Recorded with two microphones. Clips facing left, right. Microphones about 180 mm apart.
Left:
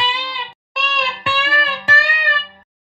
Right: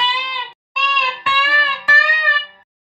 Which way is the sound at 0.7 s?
25° left (ahead or behind).